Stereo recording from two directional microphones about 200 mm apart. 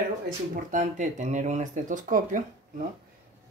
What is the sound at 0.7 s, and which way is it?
Speech, 40° right (ahead or behind).